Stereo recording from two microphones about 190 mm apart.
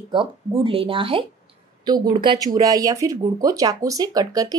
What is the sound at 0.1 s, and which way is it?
Speech, 25° right (ahead or behind).